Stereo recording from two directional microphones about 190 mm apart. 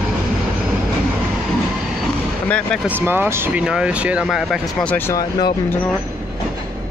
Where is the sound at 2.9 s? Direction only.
10° right (ahead or behind); by 5.5 s 20° left (ahead or behind).